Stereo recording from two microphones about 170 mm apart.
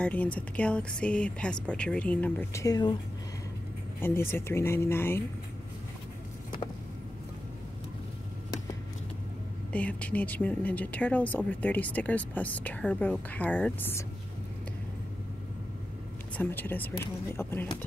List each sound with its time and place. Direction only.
0.0 s speech: 10° left (ahead or behind)
2.6 s speech: 25° left (ahead or behind)
4.0 s speech: 15° left (ahead or behind)
9.7 s speech: 10° left (ahead or behind)
16.3 s speech: 10° left (ahead or behind)